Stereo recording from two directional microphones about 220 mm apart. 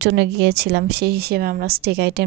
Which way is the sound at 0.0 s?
50° right (ahead or behind).